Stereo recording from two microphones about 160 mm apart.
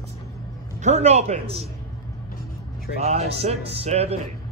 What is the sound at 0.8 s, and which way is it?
Speech, 45° right (ahead or behind).